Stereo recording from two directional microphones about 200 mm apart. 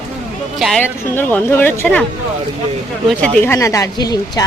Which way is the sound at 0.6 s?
Centre (ahead or behind).